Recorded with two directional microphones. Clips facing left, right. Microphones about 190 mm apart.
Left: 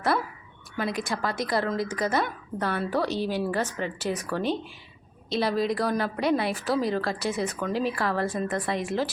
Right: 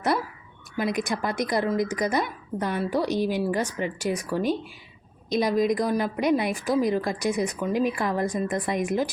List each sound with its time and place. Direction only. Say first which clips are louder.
0.8 s a woman's voice: right 3 dB; 15° right (ahead or behind)